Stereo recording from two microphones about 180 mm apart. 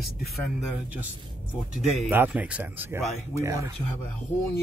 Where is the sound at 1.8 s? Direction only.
10° right (ahead or behind).